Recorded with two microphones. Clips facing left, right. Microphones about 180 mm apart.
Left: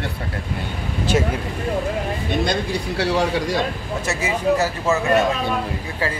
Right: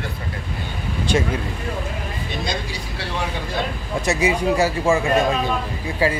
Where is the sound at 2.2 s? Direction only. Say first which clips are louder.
Left 6 dB; 60° left (ahead or behind); by 3.5 s 90° left.